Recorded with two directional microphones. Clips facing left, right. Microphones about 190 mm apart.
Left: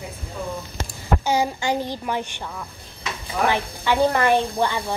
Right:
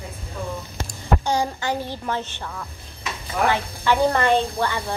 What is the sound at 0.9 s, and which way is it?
A woman's voice, 5° left (ahead or behind).